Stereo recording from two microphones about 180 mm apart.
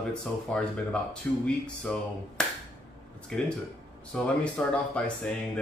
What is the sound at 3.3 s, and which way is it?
Speech, 5° left (ahead or behind).